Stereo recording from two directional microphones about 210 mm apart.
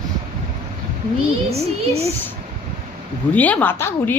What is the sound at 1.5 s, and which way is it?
Speech, 30° right (ahead or behind).